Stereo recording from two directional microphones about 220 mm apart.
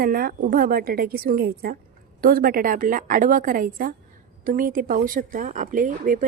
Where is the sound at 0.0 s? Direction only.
40° right (ahead or behind).